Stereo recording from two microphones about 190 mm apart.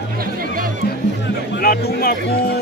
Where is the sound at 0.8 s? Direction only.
60° left (ahead or behind).